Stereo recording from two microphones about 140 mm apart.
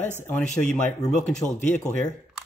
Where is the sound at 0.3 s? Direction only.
10° left (ahead or behind).